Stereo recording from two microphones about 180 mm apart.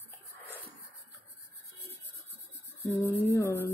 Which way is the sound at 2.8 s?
15° left (ahead or behind).